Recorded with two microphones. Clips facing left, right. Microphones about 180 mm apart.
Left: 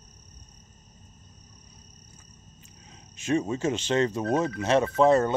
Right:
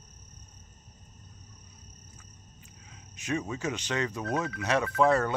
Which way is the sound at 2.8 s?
30° left (ahead or behind).